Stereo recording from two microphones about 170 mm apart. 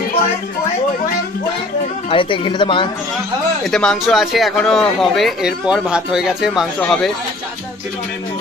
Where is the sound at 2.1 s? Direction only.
30° left (ahead or behind).